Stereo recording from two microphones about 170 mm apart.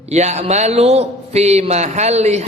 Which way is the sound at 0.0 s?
40° right (ahead or behind).